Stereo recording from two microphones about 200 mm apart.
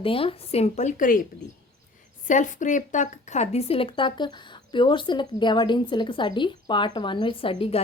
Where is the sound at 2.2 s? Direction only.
40° left (ahead or behind).